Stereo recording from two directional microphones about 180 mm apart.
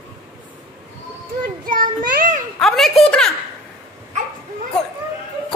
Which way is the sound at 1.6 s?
50° right (ahead or behind).